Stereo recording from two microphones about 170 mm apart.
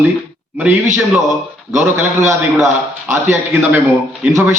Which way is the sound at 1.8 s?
15° right (ahead or behind).